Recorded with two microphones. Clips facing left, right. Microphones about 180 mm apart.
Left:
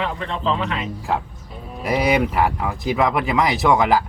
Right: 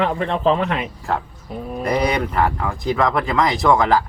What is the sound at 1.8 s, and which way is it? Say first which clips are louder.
Speech: left 1 dB; 5° left (ahead or behind).